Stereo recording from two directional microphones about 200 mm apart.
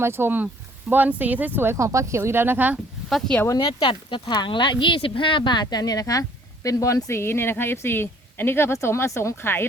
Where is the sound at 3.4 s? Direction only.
20° left (ahead or behind).